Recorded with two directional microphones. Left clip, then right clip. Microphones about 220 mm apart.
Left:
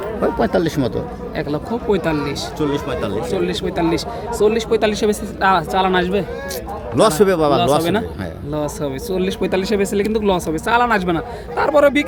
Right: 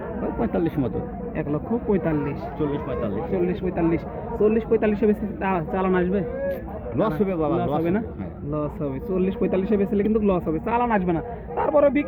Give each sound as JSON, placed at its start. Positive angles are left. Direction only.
{"t": 0.2, "sound": "speech", "side_deg": 35}
{"t": 1.9, "sound": "speech", "side_deg": 10}
{"t": 2.6, "sound": "speech", "side_deg": 40}
{"t": 3.3, "sound": "speech", "side_deg": 10}
{"t": 6.9, "sound": "speech", "side_deg": 50}
{"t": 9.1, "sound": "speech", "side_deg": 15}